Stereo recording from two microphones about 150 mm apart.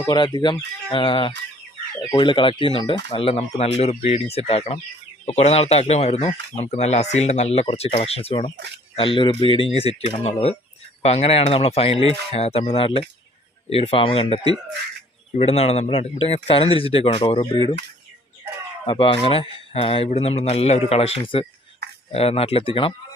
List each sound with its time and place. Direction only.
0.0 s speech: 30° left (ahead or behind)
18.9 s speech: 35° left (ahead or behind)